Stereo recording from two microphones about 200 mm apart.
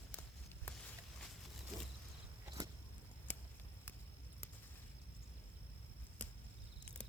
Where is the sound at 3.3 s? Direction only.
10° left (ahead or behind).